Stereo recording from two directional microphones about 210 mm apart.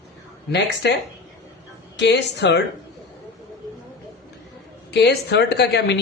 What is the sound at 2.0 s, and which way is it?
Speech, 55° left (ahead or behind).